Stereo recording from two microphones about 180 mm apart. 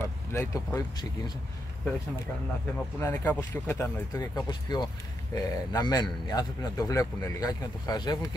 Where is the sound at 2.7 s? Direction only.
10° left (ahead or behind).